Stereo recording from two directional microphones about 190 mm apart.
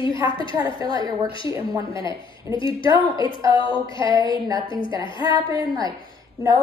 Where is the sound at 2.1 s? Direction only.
25° left (ahead or behind).